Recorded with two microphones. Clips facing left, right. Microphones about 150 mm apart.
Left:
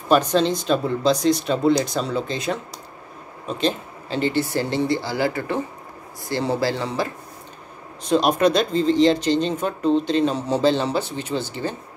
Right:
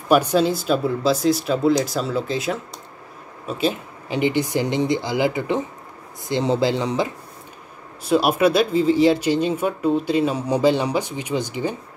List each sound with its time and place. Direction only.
0.1 s speech: 10° right (ahead or behind)
8.0 s speech: 5° right (ahead or behind)